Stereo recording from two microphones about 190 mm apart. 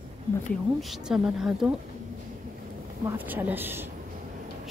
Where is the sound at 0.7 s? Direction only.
Centre (ahead or behind).